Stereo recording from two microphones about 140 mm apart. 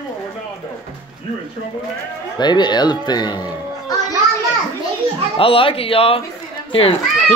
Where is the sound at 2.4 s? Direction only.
30° left (ahead or behind).